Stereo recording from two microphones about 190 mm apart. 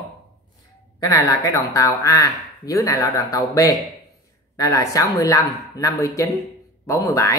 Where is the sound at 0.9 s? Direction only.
20° left (ahead or behind).